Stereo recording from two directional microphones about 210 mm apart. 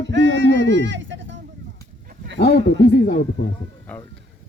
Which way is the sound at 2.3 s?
55° left (ahead or behind).